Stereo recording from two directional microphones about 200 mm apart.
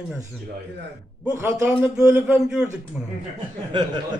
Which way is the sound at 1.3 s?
10° right (ahead or behind).